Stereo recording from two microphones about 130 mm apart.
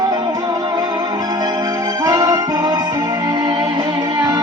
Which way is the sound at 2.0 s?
30° right (ahead or behind).